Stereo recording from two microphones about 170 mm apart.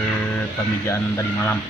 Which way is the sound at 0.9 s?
15° left (ahead or behind).